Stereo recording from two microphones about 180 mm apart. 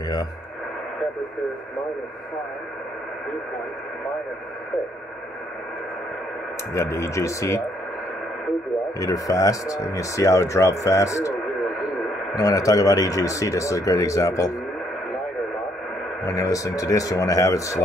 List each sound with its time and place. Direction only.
6.7 s speech: 15° left (ahead or behind)
9.0 s speech: 20° left (ahead or behind)
12.4 s speech: 20° left (ahead or behind)
16.3 s speech: 20° left (ahead or behind)